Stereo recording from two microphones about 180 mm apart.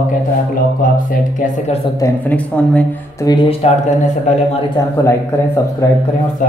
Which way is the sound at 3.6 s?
35° left (ahead or behind).